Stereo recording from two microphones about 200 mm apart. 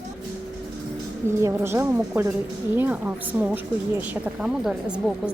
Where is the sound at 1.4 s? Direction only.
15° right (ahead or behind).